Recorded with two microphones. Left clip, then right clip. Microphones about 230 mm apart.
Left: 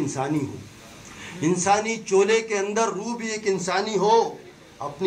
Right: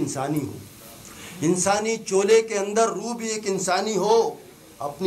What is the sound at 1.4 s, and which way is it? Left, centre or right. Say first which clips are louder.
Speech: left 1 dB; right.